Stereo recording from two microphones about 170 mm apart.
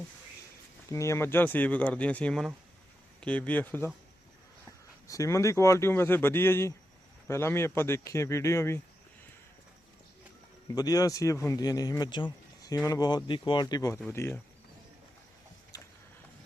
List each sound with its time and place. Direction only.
0.9 s speech: 15° left (ahead or behind)
5.0 s speech: 20° left (ahead or behind)
10.7 s speech: 20° left (ahead or behind)
15.7 s a sound: 20° left (ahead or behind)